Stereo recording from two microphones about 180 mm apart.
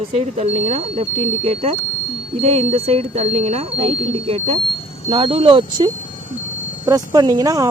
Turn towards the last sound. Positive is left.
turn(degrees=-20)  # may be behind; listen again after turning